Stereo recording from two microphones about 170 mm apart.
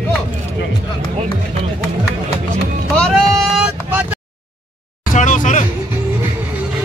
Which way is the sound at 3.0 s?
Centre (ahead or behind).